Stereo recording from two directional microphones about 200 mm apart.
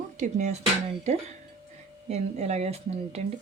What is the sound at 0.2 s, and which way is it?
Speech, 35° right (ahead or behind).